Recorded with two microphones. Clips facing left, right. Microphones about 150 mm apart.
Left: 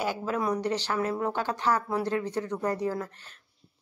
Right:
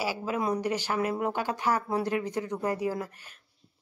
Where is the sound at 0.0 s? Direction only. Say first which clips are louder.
Left 1 dB; 10° right (ahead or behind).